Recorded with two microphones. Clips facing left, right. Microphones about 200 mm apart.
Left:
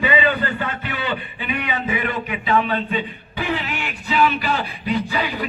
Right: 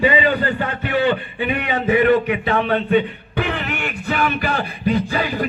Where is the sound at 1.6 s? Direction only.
60° right (ahead or behind).